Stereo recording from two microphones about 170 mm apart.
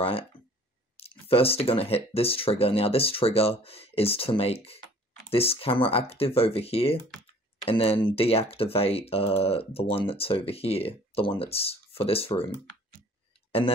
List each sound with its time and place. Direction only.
0.9 s speech: 35° left (ahead or behind)